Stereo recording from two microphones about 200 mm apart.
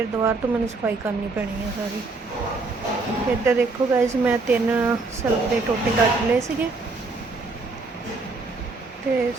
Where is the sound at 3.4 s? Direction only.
15° right (ahead or behind).